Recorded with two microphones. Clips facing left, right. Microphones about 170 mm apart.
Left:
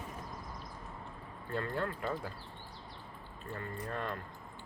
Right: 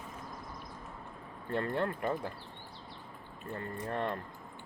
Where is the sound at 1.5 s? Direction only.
25° right (ahead or behind).